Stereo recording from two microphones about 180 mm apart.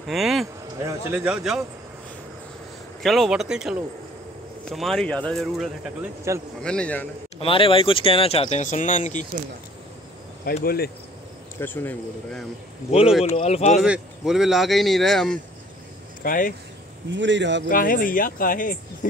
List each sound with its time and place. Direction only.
0.0 s speech: centre (ahead or behind)
0.8 s speech: 15° right (ahead or behind)
3.0 s speech: centre (ahead or behind)
6.3 s a man's voice: 15° right (ahead or behind)
6.6 s speech: 5° left (ahead or behind)
7.3 s speech: 30° left (ahead or behind)
10.4 s speech: 55° left (ahead or behind)
11.6 s speech: 10° left (ahead or behind)
13.4 s speech: 35° left (ahead or behind)
13.8 s speech: 5° right (ahead or behind)
16.2 s speech: 50° left (ahead or behind)
17.1 s speech: 85° right
17.6 s speech: 50° left (ahead or behind)